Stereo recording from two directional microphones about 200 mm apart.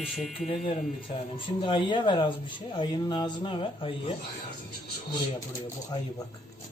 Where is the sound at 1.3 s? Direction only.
25° left (ahead or behind).